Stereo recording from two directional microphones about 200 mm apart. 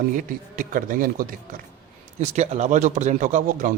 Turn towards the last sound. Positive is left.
turn(degrees=-40)  # may be behind; listen again after turning